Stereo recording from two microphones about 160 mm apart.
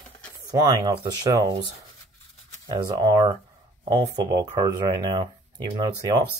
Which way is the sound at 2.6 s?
25° right (ahead or behind).